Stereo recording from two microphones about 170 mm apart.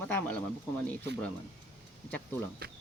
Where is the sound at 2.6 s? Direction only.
65° right (ahead or behind).